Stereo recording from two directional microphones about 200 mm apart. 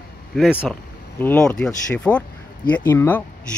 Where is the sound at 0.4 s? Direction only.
5° right (ahead or behind).